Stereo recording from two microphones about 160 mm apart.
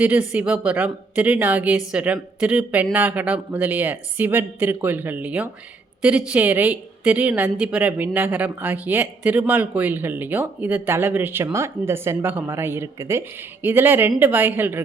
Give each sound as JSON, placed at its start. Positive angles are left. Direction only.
{"t": 0.0, "sound": "a woman's voice", "side_deg": -10}